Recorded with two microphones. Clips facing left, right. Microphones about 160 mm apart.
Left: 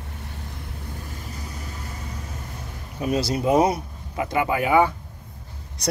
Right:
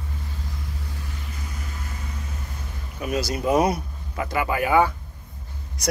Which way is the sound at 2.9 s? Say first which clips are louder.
Left 3 dB; 30° left (ahead or behind).